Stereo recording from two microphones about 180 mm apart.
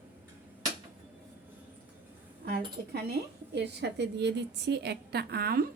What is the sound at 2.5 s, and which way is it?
A woman's voice, 60° right (ahead or behind).